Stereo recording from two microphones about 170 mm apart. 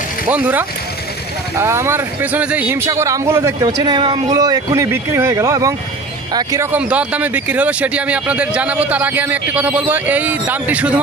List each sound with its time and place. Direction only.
0.3 s speech: 10° right (ahead or behind)